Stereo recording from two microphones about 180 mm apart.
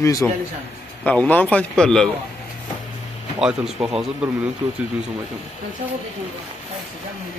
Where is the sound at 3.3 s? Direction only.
5° right (ahead or behind).